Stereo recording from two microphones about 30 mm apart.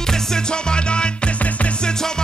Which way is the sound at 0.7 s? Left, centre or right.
Left.